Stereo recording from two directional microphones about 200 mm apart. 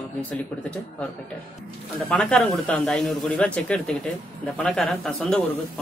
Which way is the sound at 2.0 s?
5° left (ahead or behind).